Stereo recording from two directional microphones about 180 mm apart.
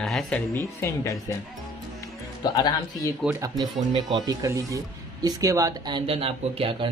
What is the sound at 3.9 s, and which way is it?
Speech, 30° right (ahead or behind).